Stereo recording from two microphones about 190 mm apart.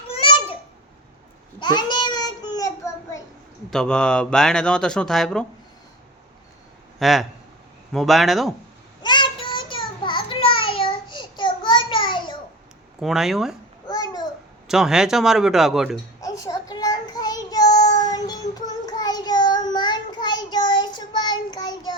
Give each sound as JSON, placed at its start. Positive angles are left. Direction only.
{"t": 0.1, "sound": "babbling", "side_deg": 30}
{"t": 1.5, "sound": "child singing", "side_deg": 20}
{"t": 3.7, "sound": "speech", "side_deg": 5}
{"t": 7.0, "sound": "speech", "side_deg": 0}
{"t": 9.0, "sound": "child singing", "side_deg": 25}
{"t": 13.0, "sound": "speech", "side_deg": 0}
{"t": 13.8, "sound": "a sound", "side_deg": 20}
{"t": 14.7, "sound": "speech", "side_deg": -5}
{"t": 16.2, "sound": "child singing", "side_deg": 20}